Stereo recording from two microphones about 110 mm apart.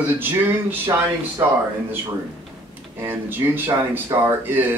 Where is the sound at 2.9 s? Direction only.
20° right (ahead or behind).